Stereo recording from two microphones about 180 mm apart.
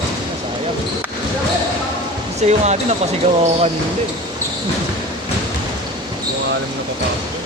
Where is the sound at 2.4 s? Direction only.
40° right (ahead or behind).